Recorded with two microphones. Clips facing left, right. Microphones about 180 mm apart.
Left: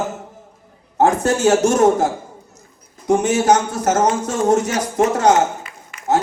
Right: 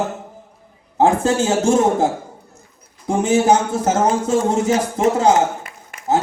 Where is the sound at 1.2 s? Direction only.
70° left (ahead or behind).